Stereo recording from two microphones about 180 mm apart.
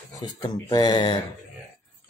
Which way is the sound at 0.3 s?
20° left (ahead or behind).